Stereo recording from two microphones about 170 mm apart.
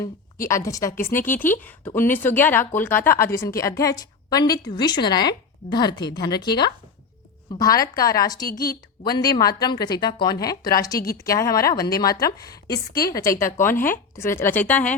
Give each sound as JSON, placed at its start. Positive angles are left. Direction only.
{"t": 0.4, "sound": "speech", "side_deg": 20}
{"t": 8.4, "sound": "a woman's voice", "side_deg": 65}
{"t": 9.0, "sound": "speech", "side_deg": 25}
{"t": 12.9, "sound": "a woman's voice", "side_deg": 60}
{"t": 13.4, "sound": "speech", "side_deg": 15}